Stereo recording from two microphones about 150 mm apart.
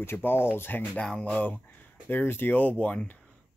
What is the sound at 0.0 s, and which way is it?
Speech, 15° left (ahead or behind).